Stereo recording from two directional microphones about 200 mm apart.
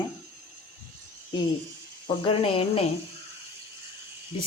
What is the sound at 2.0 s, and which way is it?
Speech, 25° left (ahead or behind).